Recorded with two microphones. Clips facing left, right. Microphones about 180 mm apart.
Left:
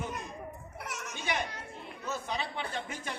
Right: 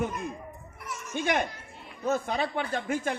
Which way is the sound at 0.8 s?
70° left (ahead or behind).